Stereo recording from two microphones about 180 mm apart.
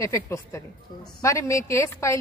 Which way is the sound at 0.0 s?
15° left (ahead or behind).